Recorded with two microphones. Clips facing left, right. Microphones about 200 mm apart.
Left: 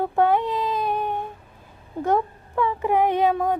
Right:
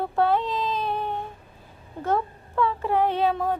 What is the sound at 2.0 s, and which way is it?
Speech, 15° left (ahead or behind).